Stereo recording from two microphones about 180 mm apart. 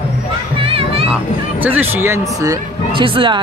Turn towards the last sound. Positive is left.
turn(degrees=-30)  # may be behind; listen again after turning